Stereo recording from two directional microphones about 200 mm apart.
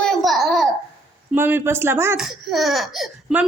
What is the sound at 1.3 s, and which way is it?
Speech, 10° right (ahead or behind).